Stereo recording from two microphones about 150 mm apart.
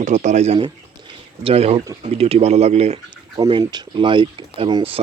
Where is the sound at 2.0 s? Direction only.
40° right (ahead or behind).